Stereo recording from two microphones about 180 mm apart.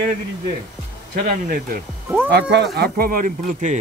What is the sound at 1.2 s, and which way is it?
Speech, 50° right (ahead or behind).